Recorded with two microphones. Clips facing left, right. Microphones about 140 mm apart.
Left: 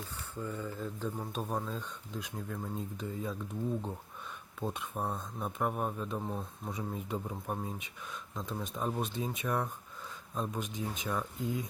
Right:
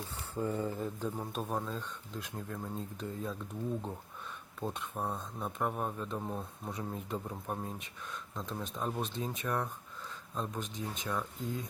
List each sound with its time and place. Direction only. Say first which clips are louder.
0.3 s speech: right 5 dB; 25° right (ahead or behind)
0.9 s speech: even; 10° right (ahead or behind)
4.6 s speech: left 1 dB; centre (ahead or behind)